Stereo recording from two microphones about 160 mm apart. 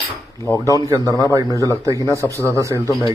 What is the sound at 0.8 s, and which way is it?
A man's voice, 25° right (ahead or behind).